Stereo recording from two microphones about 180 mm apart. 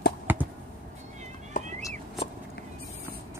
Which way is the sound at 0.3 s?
10° right (ahead or behind).